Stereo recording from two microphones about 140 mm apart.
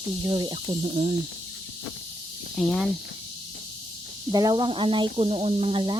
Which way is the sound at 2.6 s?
Centre (ahead or behind).